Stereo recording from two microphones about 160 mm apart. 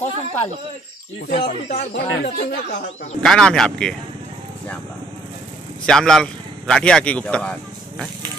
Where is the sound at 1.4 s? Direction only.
40° left (ahead or behind).